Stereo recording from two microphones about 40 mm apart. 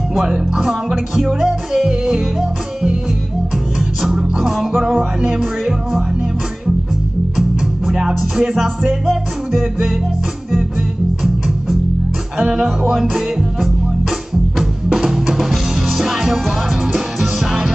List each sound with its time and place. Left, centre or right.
0.3 s music: centre
4.0 s music: centre
5.3 s speech: centre
7.3 s music: centre
12.4 s music: right
15.0 s music: centre